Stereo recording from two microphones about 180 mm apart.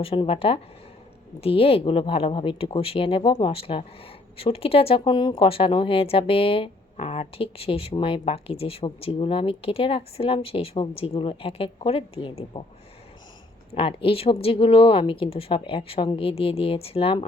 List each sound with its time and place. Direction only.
0.0 s speech: 30° left (ahead or behind)
13.7 s speech: 30° left (ahead or behind)